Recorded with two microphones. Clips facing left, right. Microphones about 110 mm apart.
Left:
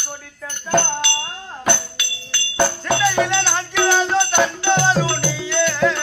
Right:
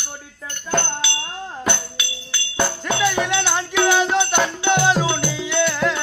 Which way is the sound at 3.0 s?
5° right (ahead or behind).